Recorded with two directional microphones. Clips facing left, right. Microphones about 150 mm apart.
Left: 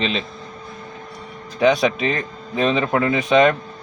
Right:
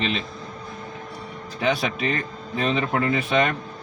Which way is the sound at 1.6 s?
90° left.